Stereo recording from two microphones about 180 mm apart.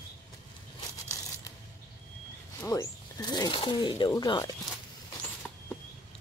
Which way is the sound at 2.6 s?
15° left (ahead or behind).